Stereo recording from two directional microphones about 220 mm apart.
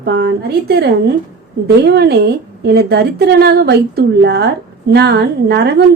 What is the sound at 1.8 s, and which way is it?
A woman's voice, 50° right (ahead or behind).